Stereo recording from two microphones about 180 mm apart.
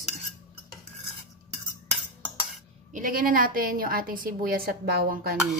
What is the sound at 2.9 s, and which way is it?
A woman's voice, 50° right (ahead or behind).